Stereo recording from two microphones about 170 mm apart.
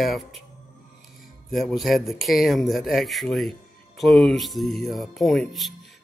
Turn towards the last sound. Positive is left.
turn(degrees=0)  # may be behind; listen again after turning